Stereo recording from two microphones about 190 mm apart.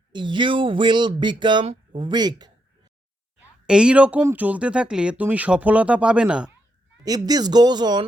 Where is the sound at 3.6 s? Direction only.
5° right (ahead or behind).